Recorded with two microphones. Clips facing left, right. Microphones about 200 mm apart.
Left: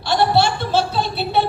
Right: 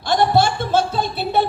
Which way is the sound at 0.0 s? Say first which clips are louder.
Even; 50° right (ahead or behind).